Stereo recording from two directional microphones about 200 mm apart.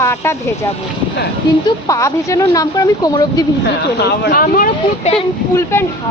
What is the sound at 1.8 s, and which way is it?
A woman's voice, 15° left (ahead or behind).